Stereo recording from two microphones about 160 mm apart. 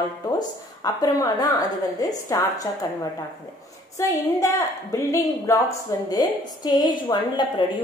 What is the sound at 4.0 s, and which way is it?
A woman's voice, 20° left (ahead or behind).